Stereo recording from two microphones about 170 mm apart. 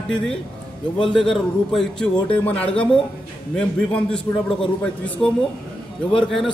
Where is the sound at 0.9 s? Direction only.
30° left (ahead or behind).